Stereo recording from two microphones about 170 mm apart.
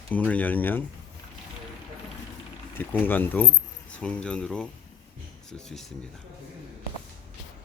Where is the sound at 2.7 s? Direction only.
10° left (ahead or behind).